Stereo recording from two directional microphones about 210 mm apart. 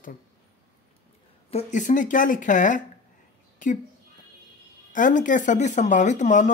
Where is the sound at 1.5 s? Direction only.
35° left (ahead or behind).